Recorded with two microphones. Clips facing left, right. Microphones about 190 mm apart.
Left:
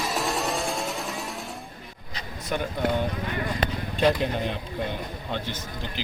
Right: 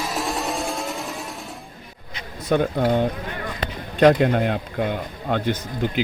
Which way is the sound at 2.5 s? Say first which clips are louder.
Right 7 dB; 55° right (ahead or behind).